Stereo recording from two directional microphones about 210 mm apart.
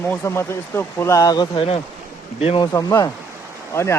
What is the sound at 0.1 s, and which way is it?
Speech, 10° left (ahead or behind).